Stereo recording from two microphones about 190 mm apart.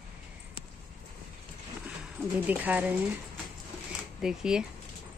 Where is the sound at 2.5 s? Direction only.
10° right (ahead or behind).